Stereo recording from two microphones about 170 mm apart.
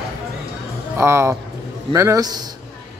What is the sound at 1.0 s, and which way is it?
A man's voice, 15° right (ahead or behind).